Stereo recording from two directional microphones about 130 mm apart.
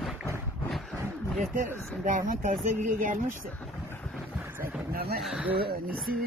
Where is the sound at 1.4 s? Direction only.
90° right.